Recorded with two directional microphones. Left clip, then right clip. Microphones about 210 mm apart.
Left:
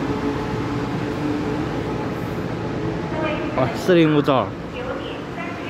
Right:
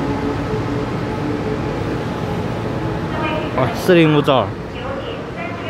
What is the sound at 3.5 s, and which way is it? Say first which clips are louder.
Speech: right 3 dB; centre (ahead or behind).